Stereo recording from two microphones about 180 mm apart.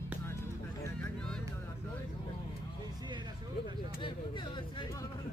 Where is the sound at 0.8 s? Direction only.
5° left (ahead or behind).